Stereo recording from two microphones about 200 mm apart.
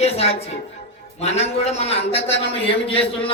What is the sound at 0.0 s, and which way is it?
A woman's voice, 30° left (ahead or behind).